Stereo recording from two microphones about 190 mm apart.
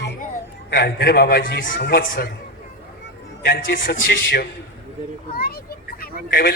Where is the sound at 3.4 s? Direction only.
55° left (ahead or behind).